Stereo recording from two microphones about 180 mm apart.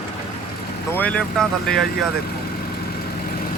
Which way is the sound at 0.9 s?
10° left (ahead or behind).